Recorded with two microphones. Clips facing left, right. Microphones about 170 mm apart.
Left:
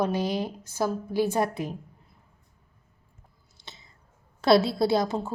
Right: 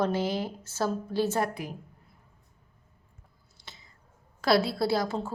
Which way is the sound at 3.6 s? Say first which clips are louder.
Left 2 dB; 20° left (ahead or behind).